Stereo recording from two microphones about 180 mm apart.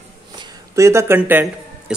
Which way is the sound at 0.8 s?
15° right (ahead or behind).